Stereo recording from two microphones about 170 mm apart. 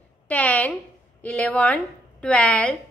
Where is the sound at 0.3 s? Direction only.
10° left (ahead or behind).